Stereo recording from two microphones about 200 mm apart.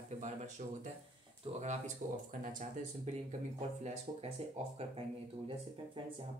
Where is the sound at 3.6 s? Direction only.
30° right (ahead or behind).